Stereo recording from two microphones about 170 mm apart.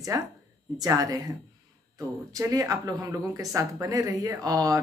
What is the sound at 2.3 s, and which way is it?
Speech, 20° right (ahead or behind).